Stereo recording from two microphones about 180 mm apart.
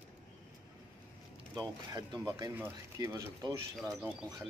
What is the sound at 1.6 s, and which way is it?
Speech, 20° right (ahead or behind).